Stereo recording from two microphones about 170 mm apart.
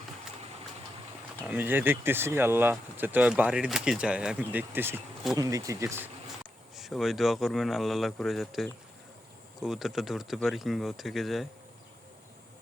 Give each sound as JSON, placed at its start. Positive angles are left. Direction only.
{"t": 1.5, "sound": "speech", "side_deg": -10}
{"t": 6.7, "sound": "speech", "side_deg": 0}